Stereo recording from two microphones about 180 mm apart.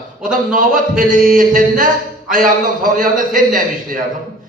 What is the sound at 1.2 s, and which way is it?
A man's voice, 50° right (ahead or behind).